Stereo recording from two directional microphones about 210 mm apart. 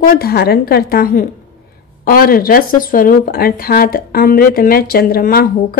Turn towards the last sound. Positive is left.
turn(degrees=45)  # may be behind; listen again after turning